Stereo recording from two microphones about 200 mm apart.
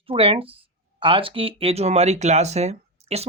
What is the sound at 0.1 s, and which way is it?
Speech, 25° right (ahead or behind).